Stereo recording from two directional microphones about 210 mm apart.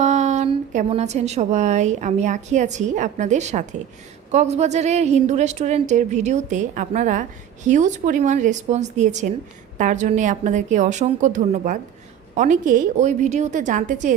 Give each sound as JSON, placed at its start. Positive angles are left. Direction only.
{"t": 0.0, "sound": "a woman's voice", "side_deg": -35}